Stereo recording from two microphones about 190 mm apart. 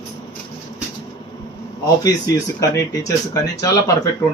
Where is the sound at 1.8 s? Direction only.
20° left (ahead or behind).